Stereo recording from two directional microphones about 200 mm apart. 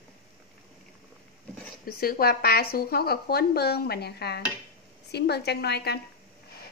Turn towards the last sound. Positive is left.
turn(degrees=55)  # may be behind; listen again after turning